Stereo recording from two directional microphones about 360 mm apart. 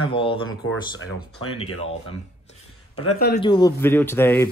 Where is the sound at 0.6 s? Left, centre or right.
Left.